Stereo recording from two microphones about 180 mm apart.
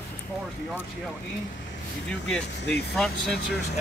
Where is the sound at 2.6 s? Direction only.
70° left (ahead or behind).